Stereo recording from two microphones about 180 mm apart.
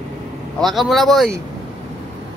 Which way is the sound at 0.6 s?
Centre (ahead or behind).